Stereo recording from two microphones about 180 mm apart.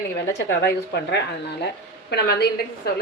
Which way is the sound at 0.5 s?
70° left (ahead or behind).